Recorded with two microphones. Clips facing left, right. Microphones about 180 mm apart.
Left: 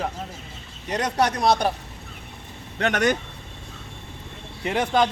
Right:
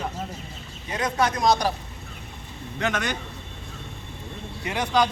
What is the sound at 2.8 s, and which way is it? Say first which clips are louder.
Speech: left 3 dB; 65° left (ahead or behind).